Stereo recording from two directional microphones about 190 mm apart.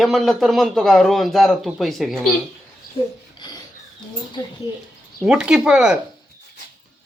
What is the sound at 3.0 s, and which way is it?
Speech, 30° left (ahead or behind).